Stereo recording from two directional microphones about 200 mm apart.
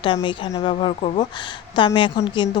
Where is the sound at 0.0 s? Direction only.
25° left (ahead or behind).